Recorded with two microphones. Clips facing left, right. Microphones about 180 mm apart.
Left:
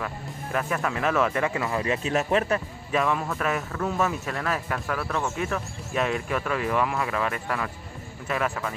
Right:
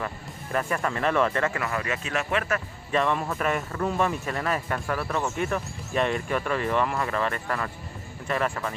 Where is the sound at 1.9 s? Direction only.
35° left (ahead or behind).